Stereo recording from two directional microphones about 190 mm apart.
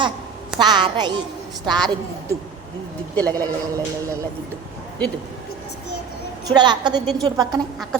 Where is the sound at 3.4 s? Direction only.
15° right (ahead or behind).